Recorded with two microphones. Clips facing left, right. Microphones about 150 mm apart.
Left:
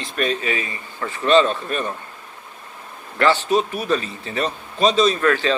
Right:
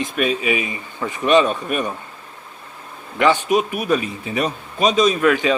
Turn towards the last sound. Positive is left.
turn(degrees=-10)  # may be behind; listen again after turning